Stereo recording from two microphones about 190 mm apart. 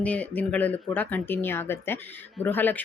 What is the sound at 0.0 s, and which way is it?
Speech, 5° left (ahead or behind).